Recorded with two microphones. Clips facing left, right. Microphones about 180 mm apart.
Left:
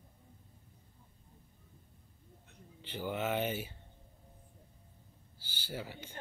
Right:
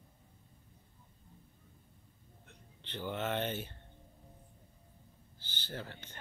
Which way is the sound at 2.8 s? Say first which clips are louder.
Left 1 dB; 10° left (ahead or behind).